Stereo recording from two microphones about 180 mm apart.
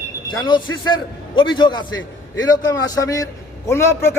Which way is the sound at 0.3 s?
25° left (ahead or behind).